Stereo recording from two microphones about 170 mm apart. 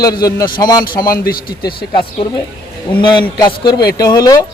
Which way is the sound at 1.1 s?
60° left (ahead or behind).